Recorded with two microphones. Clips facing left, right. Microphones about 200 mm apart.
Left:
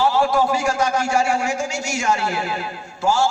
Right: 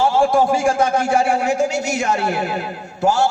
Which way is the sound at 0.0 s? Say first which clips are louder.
Right 3 dB; 50° right (ahead or behind).